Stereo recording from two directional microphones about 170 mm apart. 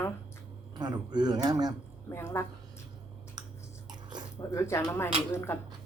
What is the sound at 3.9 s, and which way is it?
Biting, 25° right (ahead or behind).